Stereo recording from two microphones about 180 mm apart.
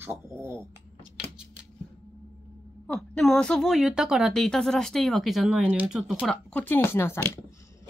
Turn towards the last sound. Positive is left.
turn(degrees=15)  # may be behind; listen again after turning